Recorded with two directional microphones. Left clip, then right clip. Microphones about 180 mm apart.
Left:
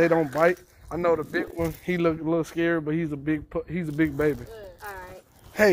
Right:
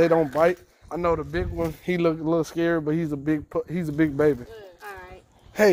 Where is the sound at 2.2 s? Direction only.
55° right (ahead or behind).